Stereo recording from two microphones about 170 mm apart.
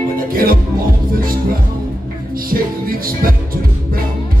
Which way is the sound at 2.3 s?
60° right (ahead or behind).